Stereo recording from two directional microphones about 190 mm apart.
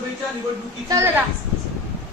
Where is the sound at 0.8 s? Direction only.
15° right (ahead or behind).